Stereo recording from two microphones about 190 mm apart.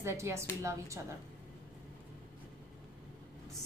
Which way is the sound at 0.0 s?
15° right (ahead or behind).